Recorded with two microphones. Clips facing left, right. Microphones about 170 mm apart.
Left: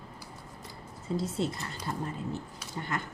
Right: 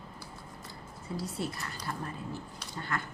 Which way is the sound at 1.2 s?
25° left (ahead or behind).